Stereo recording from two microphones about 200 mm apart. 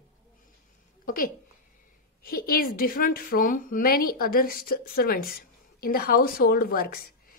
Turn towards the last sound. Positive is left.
turn(degrees=45)  # may be behind; listen again after turning